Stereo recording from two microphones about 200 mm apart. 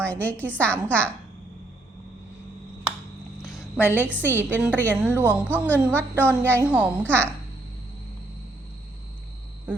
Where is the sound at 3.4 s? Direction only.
Centre (ahead or behind).